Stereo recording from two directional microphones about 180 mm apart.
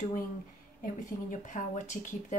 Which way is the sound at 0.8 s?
45° left (ahead or behind).